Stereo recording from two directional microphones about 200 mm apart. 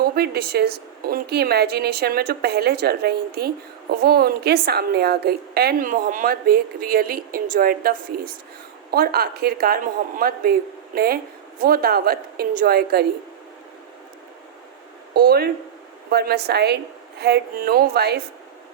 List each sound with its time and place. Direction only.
0.0 s a woman's voice: 50° right (ahead or behind)
15.1 s a woman's voice: 50° right (ahead or behind)